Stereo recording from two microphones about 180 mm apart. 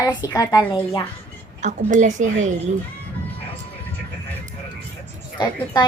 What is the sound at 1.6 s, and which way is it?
Speech, 40° right (ahead or behind).